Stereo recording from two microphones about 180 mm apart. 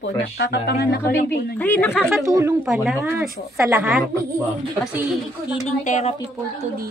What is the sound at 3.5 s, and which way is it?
Speech, 15° right (ahead or behind).